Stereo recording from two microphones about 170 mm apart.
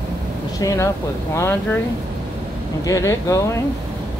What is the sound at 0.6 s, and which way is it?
Speech, 15° left (ahead or behind).